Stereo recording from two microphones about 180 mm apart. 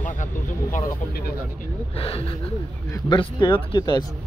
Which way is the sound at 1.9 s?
30° left (ahead or behind).